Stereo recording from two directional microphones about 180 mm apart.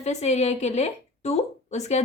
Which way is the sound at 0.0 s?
40° left (ahead or behind).